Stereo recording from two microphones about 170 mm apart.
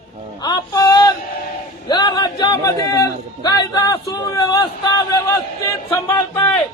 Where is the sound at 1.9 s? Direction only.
25° left (ahead or behind).